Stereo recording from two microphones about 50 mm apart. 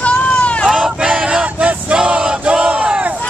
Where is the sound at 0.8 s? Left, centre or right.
Centre.